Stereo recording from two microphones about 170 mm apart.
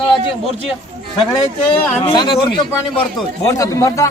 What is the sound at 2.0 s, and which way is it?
Speech, 30° left (ahead or behind).